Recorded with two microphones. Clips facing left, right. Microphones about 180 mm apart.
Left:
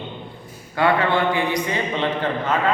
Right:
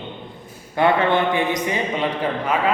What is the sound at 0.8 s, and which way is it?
A man's voice, 20° right (ahead or behind).